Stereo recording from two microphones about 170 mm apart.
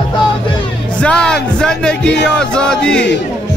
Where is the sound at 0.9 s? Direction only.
5° left (ahead or behind).